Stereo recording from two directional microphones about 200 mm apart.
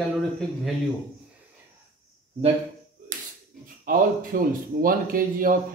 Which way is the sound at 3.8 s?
45° right (ahead or behind).